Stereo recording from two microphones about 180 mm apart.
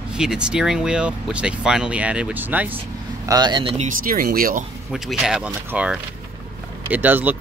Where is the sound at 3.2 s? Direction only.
25° right (ahead or behind).